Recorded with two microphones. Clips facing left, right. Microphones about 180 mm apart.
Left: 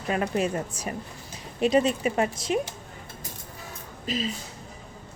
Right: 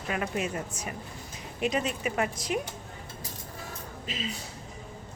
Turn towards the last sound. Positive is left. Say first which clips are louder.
# left 8 dB
turn(degrees=35)  # may be behind; listen again after turning